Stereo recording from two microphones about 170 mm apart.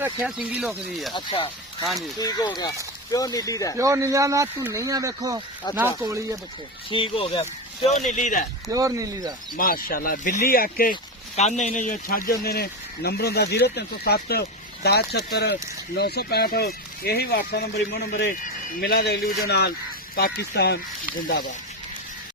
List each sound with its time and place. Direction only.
0.0 s speech: 10° right (ahead or behind)
1.1 s speech: 30° left (ahead or behind)
3.8 s speech: 20° right (ahead or behind)
6.9 s speech: 30° left (ahead or behind)
8.1 s speech: 50° left (ahead or behind)
8.7 s speech: 20° right (ahead or behind)
9.6 s speech: 60° left (ahead or behind)
11.3 s speech: 40° left (ahead or behind); by 20.7 s 70° left (ahead or behind)
21.2 s speech: 60° left (ahead or behind)